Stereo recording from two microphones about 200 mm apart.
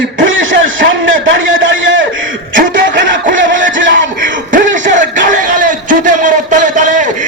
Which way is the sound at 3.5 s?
70° right (ahead or behind).